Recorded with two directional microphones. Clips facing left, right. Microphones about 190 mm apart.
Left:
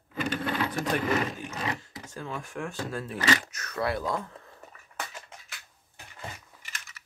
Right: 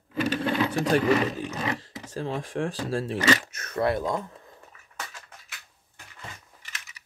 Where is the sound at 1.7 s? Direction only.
30° right (ahead or behind).